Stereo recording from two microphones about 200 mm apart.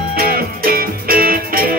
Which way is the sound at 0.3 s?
50° right (ahead or behind).